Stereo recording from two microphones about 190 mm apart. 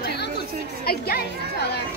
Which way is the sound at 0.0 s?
60° left (ahead or behind).